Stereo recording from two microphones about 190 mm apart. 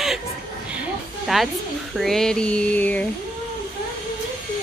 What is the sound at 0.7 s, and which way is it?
Music, 5° right (ahead or behind).